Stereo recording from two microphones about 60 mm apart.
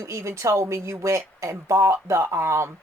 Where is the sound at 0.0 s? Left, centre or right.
Right.